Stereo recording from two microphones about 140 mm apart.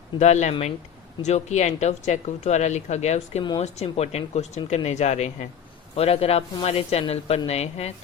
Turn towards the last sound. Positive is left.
turn(degrees=50)  # may be behind; listen again after turning